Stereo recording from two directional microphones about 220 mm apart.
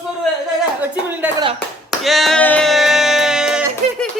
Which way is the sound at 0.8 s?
10° right (ahead or behind).